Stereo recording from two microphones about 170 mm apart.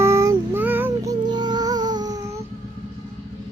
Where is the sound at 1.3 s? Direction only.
25° right (ahead or behind).